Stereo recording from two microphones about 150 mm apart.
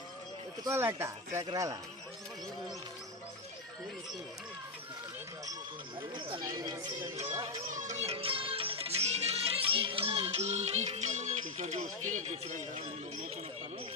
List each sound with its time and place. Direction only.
0.6 s speech: 15° right (ahead or behind)
6.0 s speech: 30° right (ahead or behind)
7.7 s music: 55° right (ahead or behind)